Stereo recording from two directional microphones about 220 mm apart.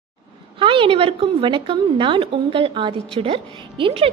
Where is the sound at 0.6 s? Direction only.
25° right (ahead or behind).